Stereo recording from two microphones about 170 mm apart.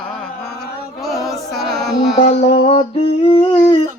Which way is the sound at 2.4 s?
35° left (ahead or behind).